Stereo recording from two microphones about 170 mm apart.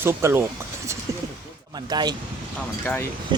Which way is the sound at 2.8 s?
15° left (ahead or behind).